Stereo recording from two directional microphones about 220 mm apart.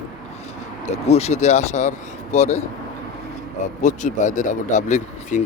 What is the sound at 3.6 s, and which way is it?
Speech, 35° left (ahead or behind).